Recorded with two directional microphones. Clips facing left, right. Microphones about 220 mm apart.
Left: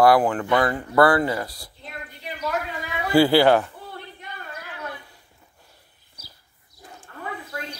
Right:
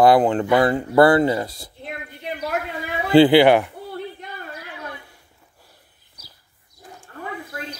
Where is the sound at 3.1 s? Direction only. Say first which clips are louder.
Right 4 dB; 20° right (ahead or behind).